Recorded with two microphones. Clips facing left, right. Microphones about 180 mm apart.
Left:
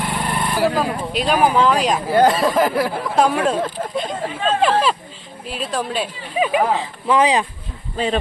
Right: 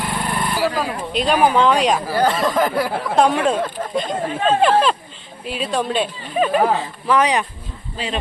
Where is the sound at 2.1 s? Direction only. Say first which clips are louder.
Left 4 dB; 20° left (ahead or behind).